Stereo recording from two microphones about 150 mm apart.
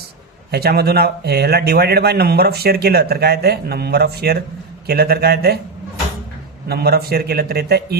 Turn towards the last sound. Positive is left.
turn(degrees=-90)